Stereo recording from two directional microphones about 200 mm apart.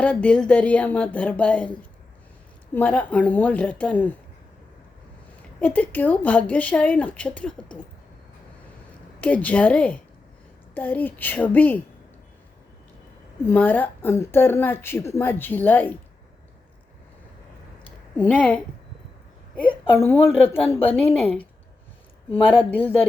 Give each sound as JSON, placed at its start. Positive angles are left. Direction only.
{"t": 0.0, "sound": "a woman's voice", "side_deg": 5}
{"t": 2.7, "sound": "a woman's voice", "side_deg": 10}
{"t": 5.5, "sound": "a woman's voice", "side_deg": 5}
{"t": 9.2, "sound": "a woman's voice", "side_deg": 5}
{"t": 13.4, "sound": "a woman's voice", "side_deg": 10}
{"t": 18.2, "sound": "a woman's voice", "side_deg": 5}
{"t": 19.9, "sound": "a woman's voice", "side_deg": 10}
{"t": 22.3, "sound": "speech", "side_deg": 25}
{"t": 22.7, "sound": "a woman's voice", "side_deg": 10}